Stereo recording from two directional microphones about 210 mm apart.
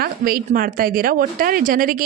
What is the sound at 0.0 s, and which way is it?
A woman's voice, 45° right (ahead or behind).